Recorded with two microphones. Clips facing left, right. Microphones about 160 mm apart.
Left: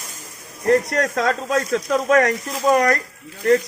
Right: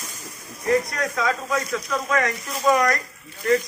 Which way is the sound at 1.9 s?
50° left (ahead or behind).